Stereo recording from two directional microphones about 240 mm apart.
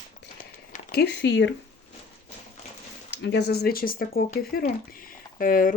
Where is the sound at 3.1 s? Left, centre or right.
Left.